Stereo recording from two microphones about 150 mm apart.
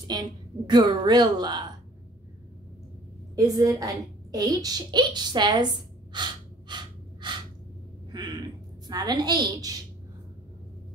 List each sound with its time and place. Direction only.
0.1 s a child's voice: 30° right (ahead or behind)
3.3 s a child's voice: 25° right (ahead or behind)
6.1 s gasp: 30° right (ahead or behind)
8.1 s a sound: 30° right (ahead or behind)
8.8 s a child's voice: 25° right (ahead or behind)